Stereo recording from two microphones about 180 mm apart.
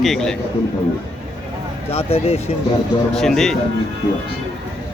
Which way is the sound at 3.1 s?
Centre (ahead or behind).